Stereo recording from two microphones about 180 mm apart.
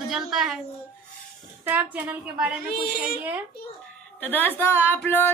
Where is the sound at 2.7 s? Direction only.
60° left (ahead or behind).